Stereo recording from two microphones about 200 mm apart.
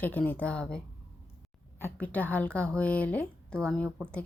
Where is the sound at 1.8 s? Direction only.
10° left (ahead or behind).